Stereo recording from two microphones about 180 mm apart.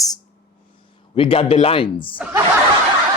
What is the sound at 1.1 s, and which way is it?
Speech, 30° left (ahead or behind).